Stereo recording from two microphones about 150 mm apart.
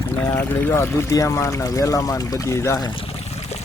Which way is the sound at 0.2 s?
15° left (ahead or behind).